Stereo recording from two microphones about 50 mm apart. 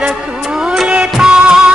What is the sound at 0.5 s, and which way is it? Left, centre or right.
Music of bollywood, centre.